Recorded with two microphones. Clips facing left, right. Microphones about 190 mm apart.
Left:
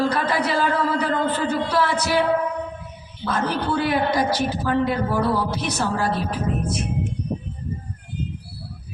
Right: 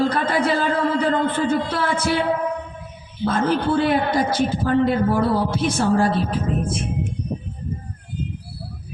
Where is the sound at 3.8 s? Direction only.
45° right (ahead or behind).